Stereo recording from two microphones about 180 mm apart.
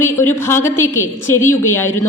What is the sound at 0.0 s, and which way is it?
A woman's voice, 15° left (ahead or behind).